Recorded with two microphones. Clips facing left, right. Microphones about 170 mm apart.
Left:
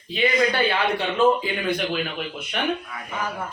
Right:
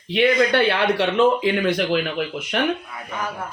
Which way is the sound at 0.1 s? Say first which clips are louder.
Right 4 dB; 75° right (ahead or behind).